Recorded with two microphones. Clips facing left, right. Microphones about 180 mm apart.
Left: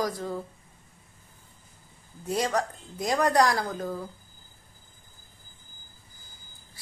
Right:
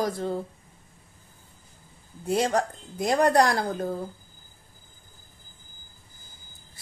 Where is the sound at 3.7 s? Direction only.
30° right (ahead or behind).